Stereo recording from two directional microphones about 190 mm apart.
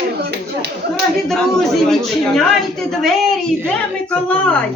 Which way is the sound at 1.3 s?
Centre (ahead or behind).